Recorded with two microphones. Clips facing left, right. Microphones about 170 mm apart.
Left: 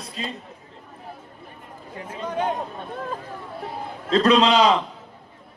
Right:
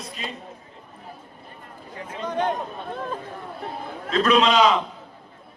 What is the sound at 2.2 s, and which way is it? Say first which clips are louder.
Speech: right 1 dB; 10° left (ahead or behind).